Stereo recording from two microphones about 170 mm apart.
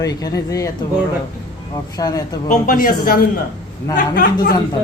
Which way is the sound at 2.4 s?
55° left (ahead or behind).